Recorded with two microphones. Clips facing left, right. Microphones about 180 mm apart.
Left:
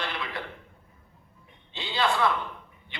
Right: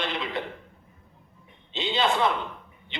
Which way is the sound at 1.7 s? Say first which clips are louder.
Right 2 dB; 20° right (ahead or behind).